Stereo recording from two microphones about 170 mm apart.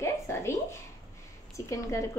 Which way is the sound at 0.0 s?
15° left (ahead or behind).